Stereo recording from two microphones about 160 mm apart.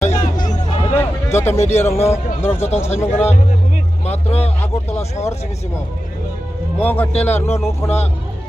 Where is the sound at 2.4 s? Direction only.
15° left (ahead or behind).